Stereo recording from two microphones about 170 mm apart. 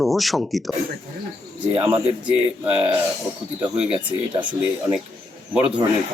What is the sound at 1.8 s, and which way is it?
Speech, 10° right (ahead or behind).